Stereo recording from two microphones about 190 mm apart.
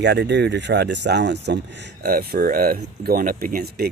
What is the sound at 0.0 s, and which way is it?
Speech, 60° right (ahead or behind).